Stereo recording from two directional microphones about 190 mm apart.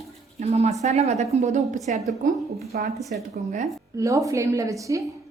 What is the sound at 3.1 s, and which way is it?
Speech, 40° right (ahead or behind).